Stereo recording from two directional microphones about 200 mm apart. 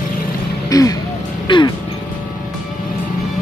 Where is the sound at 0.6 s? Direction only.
15° left (ahead or behind).